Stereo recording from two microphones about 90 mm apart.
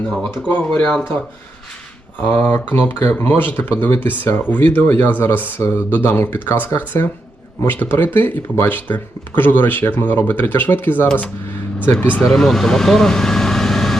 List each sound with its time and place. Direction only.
0.4 s speech: 15° left (ahead or behind)
2.4 s speech: 15° left (ahead or behind)
12.2 s speech: 5° left (ahead or behind)